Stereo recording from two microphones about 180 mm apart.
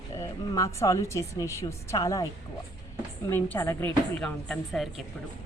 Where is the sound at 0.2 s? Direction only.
15° left (ahead or behind).